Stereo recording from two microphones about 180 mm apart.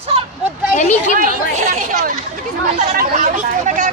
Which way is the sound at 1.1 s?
40° right (ahead or behind).